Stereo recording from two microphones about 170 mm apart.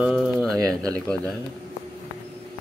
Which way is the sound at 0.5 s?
20° right (ahead or behind).